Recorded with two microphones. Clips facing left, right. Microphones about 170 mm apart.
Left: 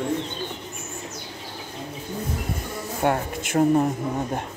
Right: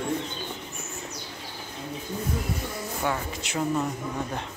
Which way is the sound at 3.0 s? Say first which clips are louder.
Left 7 dB; 55° left (ahead or behind).